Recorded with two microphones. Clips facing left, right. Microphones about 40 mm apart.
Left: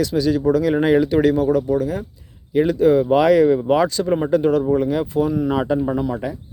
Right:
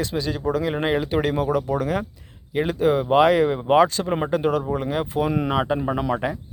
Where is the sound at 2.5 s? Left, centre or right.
Right.